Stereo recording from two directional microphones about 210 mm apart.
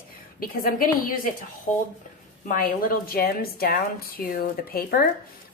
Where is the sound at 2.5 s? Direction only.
40° left (ahead or behind).